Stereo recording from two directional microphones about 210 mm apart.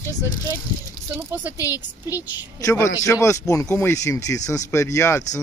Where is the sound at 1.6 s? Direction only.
15° left (ahead or behind).